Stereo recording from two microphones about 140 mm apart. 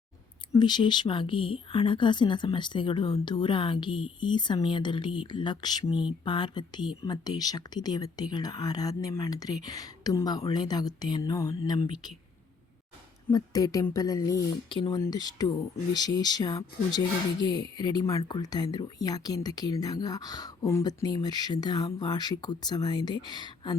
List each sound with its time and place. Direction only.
0.6 s speech: 30° left (ahead or behind)
5.9 s speech: 5° right (ahead or behind)
6.2 s speech: 35° left (ahead or behind)
13.2 s speech: 25° left (ahead or behind)